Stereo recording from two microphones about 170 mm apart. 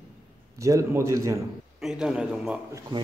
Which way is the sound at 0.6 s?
15° right (ahead or behind).